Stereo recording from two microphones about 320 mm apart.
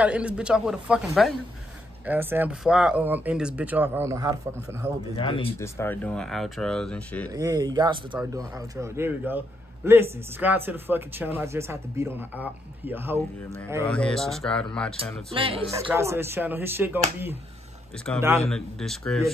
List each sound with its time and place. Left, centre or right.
0.0 s speech: centre
5.1 s speech: centre
7.3 s speech: centre
15.3 s speech: centre
18.5 s speech: centre